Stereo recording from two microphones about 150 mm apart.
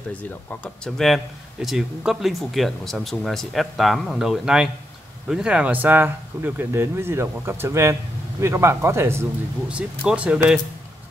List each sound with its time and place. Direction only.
0.2 s speech: 10° left (ahead or behind)
0.9 s speech: centre (ahead or behind)